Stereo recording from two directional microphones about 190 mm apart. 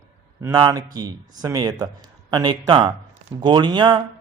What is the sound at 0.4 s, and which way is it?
A man's voice, 15° right (ahead or behind).